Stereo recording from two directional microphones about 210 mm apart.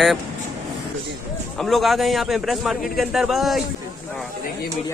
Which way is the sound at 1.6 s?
Centre (ahead or behind).